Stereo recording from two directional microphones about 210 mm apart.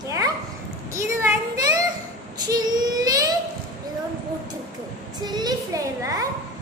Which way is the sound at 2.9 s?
20° right (ahead or behind).